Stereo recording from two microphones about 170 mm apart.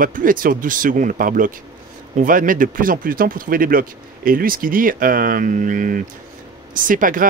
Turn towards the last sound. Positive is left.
turn(degrees=-50)  # may be behind; listen again after turning